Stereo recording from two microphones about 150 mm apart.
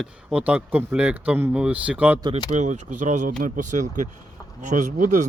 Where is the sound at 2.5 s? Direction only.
50° right (ahead or behind).